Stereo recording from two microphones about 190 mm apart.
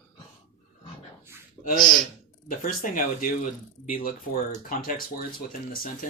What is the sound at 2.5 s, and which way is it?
Speech, 45° left (ahead or behind).